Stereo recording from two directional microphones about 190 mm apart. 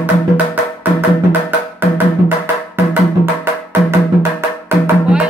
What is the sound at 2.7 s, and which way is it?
Music, 10° right (ahead or behind).